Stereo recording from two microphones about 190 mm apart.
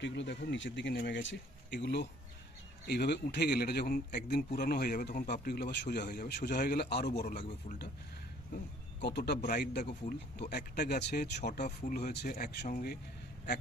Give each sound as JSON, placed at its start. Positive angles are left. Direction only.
{"t": 0.0, "sound": "a man's voice", "side_deg": 70}
{"t": 6.5, "sound": "a man's voice", "side_deg": 50}
{"t": 7.1, "sound": "speech", "side_deg": 40}
{"t": 9.0, "sound": "a man's voice", "side_deg": 60}
{"t": 11.6, "sound": "speech", "side_deg": 45}